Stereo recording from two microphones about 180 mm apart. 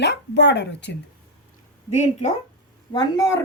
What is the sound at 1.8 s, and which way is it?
Speech, 40° left (ahead or behind).